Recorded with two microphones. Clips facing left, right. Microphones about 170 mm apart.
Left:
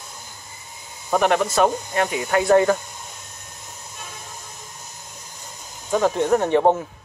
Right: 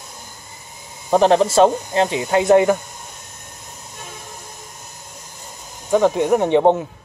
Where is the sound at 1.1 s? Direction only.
30° right (ahead or behind).